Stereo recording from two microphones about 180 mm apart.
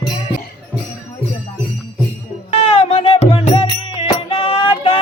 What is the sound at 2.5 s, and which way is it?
Music, 30° left (ahead or behind).